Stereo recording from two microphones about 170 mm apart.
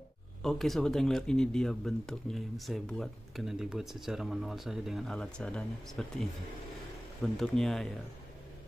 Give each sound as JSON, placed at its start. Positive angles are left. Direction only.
{"t": 0.4, "sound": "speech", "side_deg": 0}